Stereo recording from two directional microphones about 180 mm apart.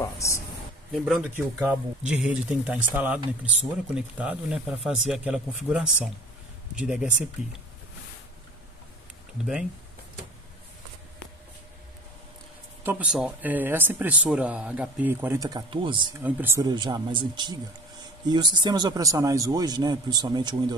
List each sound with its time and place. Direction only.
0.0 s a sound: 15° left (ahead or behind)
0.9 s speech: centre (ahead or behind)
9.4 s speech: 5° right (ahead or behind)
12.8 s speech: 5° right (ahead or behind); by 16.2 s 25° right (ahead or behind)
16.2 s speech: 10° right (ahead or behind)
16.7 s speech: 25° right (ahead or behind)